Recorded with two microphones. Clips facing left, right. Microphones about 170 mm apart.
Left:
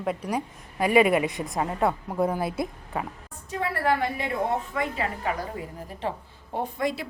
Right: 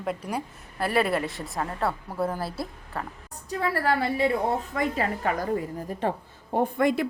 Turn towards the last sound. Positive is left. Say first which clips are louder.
# right 5 dB
turn(degrees=-55)  # may be behind; listen again after turning